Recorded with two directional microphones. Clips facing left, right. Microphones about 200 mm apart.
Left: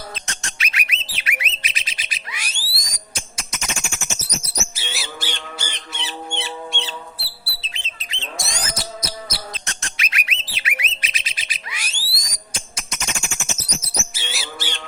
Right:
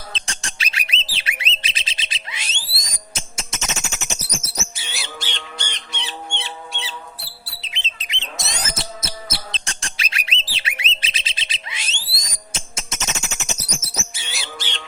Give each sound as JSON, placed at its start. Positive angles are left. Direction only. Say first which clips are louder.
{"t": 0.1, "sound": "bird", "louder": "even", "side_deg": -30}
{"t": 4.4, "sound": "bird", "louder": "left 2 dB", "side_deg": 0}
{"t": 7.6, "sound": "bird", "louder": "right 4 dB", "side_deg": -20}
{"t": 14.1, "sound": "a sound", "louder": "left 2 dB", "side_deg": 0}